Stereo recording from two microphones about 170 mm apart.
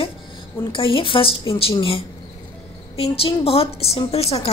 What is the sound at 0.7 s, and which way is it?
A woman's voice, 30° left (ahead or behind).